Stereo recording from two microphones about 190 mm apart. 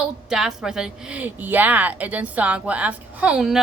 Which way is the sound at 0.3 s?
Centre (ahead or behind).